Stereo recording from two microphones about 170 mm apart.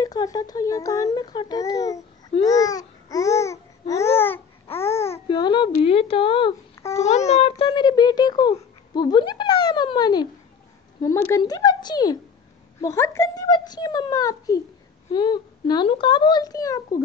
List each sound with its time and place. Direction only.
0.0 s speech: 20° left (ahead or behind)
2.4 s babbling: 20° left (ahead or behind)
5.3 s speech: 25° left (ahead or behind)
6.7 s babbling: 20° left (ahead or behind)
7.0 s speech: 40° left (ahead or behind)
7.6 s speech: 25° left (ahead or behind)